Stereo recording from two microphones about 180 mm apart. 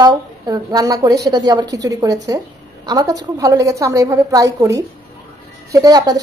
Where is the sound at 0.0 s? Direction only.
20° right (ahead or behind).